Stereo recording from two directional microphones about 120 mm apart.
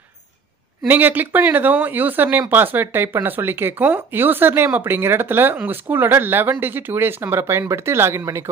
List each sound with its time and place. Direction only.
0.8 s speech: 15° right (ahead or behind)